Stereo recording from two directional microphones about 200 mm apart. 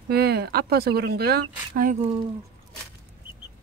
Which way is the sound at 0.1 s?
55° right (ahead or behind).